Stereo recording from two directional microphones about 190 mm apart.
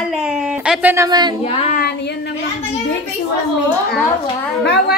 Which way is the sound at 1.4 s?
30° left (ahead or behind).